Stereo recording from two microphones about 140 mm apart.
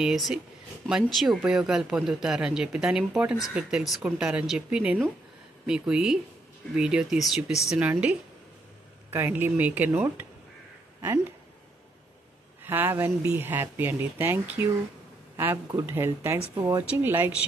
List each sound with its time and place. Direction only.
0.0 s speech: centre (ahead or behind)
9.1 s speech: 15° right (ahead or behind)
12.6 s speech: 15° right (ahead or behind)